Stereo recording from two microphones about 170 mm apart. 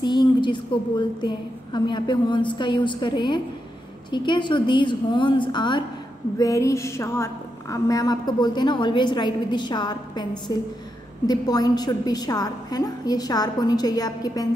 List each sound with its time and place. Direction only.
0.0 s a woman's voice: 25° left (ahead or behind)
6.3 s a sound: 20° left (ahead or behind)
7.7 s a woman's voice: 20° left (ahead or behind)